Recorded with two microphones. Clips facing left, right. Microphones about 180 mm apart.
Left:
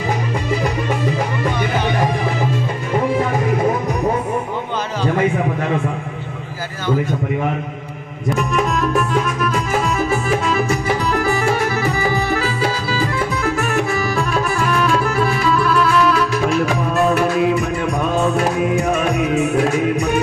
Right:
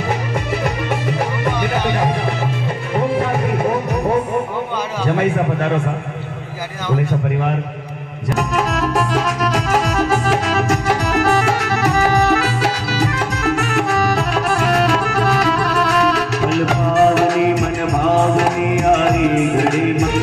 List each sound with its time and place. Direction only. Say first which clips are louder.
8.4 s music: even; 75° right (ahead or behind)
19.3 s music: right 1 dB; 65° right (ahead or behind); by 20.2 s 80° right